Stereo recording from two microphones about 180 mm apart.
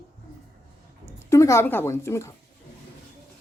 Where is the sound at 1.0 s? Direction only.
15° left (ahead or behind).